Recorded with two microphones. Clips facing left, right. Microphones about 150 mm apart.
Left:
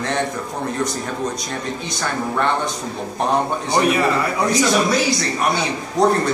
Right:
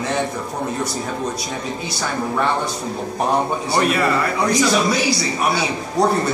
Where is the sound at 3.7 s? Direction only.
15° left (ahead or behind).